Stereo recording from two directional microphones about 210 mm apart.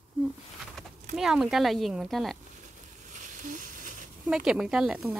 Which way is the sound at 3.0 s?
35° right (ahead or behind).